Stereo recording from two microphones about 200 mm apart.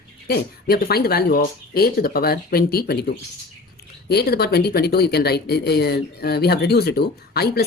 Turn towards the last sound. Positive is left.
turn(degrees=50)  # may be behind; listen again after turning